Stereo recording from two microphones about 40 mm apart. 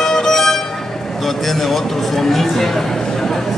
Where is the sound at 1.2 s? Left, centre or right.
Centre.